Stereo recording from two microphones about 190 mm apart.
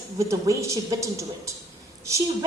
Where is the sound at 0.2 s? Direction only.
15° right (ahead or behind).